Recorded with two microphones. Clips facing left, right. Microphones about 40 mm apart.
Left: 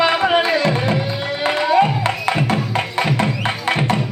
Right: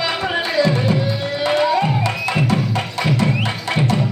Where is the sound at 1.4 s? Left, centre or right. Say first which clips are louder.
Left 2 dB; left.